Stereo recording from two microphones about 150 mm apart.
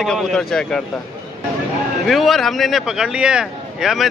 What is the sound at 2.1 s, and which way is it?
Speech, centre (ahead or behind).